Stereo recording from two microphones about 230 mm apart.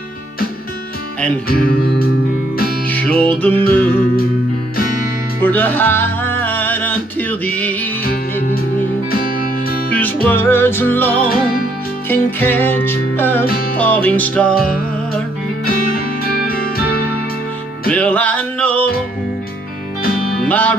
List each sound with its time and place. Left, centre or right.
1.5 s music: left
2.9 s music: centre
5.4 s music: centre
8.0 s music: left
10.2 s music: centre
15.6 s music: left
17.9 s music: centre
20.3 s music: centre